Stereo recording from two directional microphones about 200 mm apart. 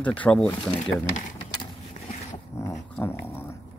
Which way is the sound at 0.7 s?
30° left (ahead or behind).